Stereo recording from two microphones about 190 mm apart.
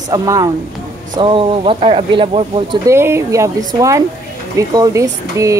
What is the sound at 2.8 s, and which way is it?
Speech, 15° right (ahead or behind).